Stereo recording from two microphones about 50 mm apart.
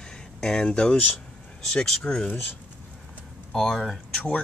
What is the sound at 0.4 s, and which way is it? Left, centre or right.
Speech, centre.